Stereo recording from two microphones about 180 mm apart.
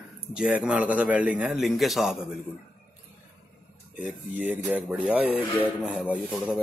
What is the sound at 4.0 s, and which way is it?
Speech, 5° right (ahead or behind).